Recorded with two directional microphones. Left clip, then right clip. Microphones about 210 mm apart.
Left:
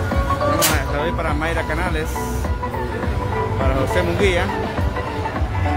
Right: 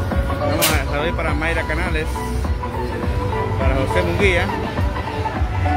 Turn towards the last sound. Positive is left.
turn(degrees=0)  # may be behind; listen again after turning